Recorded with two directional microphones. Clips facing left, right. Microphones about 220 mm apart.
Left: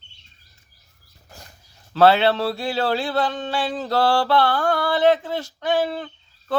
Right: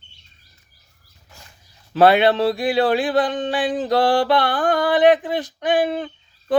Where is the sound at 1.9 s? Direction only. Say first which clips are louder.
Right 2 dB; 15° right (ahead or behind).